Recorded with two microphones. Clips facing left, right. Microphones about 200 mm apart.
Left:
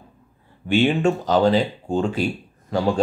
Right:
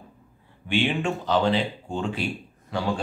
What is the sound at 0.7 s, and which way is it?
Speech, 40° left (ahead or behind).